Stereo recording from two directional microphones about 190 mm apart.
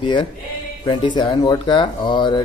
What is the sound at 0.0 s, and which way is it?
Speech, 25° left (ahead or behind).